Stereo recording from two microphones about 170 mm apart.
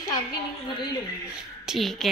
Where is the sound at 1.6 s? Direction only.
Centre (ahead or behind).